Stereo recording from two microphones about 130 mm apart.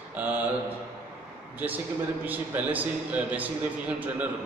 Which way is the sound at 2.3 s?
15° right (ahead or behind).